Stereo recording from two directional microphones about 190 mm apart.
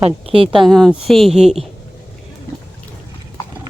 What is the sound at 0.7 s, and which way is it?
Speech, centre (ahead or behind).